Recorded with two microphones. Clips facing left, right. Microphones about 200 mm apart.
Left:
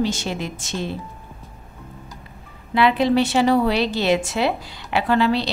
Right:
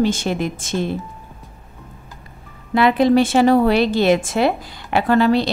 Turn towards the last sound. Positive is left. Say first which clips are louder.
# right 4 dB
turn(degrees=-45)  # may be behind; listen again after turning